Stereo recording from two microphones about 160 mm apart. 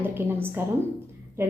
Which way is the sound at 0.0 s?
15° right (ahead or behind).